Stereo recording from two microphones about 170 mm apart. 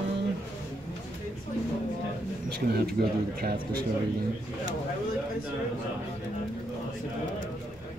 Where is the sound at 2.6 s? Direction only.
65° right (ahead or behind).